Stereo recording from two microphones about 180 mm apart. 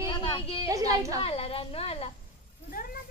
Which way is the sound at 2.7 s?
50° left (ahead or behind).